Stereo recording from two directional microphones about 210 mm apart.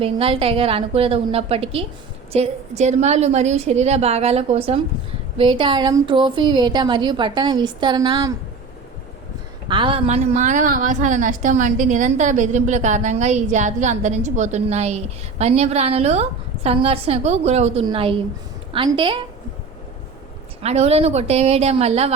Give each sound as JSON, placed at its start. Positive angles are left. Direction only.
{"t": 0.0, "sound": "a woman's voice", "side_deg": -25}
{"t": 9.6, "sound": "a woman's voice", "side_deg": -25}
{"t": 20.6, "sound": "a woman's voice", "side_deg": -30}